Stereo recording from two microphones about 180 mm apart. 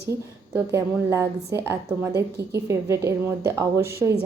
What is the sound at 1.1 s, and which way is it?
Speech, 15° right (ahead or behind).